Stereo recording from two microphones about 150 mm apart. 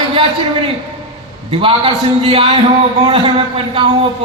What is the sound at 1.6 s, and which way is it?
A man's voice, 35° right (ahead or behind).